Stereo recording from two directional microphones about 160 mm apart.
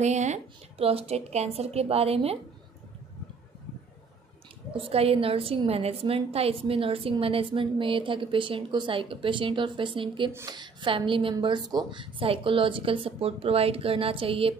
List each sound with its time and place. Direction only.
0.0 s a woman's voice: 45° right (ahead or behind)
4.7 s a woman's voice: 35° right (ahead or behind)